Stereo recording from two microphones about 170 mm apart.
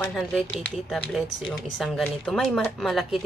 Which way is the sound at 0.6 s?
5° left (ahead or behind).